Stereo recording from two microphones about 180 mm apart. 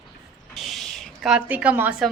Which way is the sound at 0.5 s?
Centre (ahead or behind).